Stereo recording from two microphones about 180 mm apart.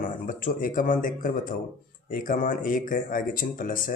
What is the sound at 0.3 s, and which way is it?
Speech, 50° left (ahead or behind).